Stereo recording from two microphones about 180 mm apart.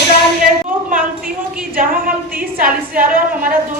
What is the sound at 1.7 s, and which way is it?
A woman's voice, 50° right (ahead or behind).